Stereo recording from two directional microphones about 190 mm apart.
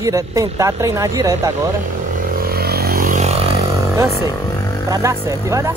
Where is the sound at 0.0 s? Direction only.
15° right (ahead or behind).